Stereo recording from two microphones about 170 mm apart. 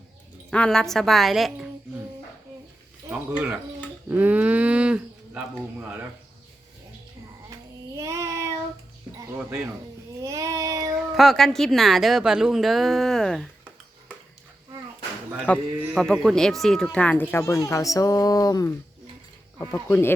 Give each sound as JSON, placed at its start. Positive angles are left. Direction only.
{"t": 0.5, "sound": "a woman's voice", "side_deg": 5}
{"t": 3.1, "sound": "a sound", "side_deg": -10}
{"t": 7.9, "sound": "child singing", "side_deg": -20}
{"t": 9.1, "sound": "speech", "side_deg": -15}
{"t": 10.2, "sound": "child singing", "side_deg": -20}
{"t": 10.9, "sound": "a woman's voice", "side_deg": 0}
{"t": 15.5, "sound": "speech", "side_deg": 10}
{"t": 19.9, "sound": "speech", "side_deg": 10}